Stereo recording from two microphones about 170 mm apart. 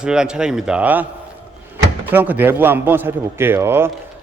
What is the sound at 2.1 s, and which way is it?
A man's voice, 10° right (ahead or behind).